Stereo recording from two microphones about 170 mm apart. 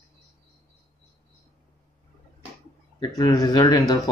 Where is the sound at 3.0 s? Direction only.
25° left (ahead or behind).